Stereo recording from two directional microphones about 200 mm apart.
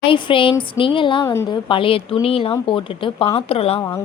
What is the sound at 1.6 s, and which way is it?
A woman's voice, 25° left (ahead or behind).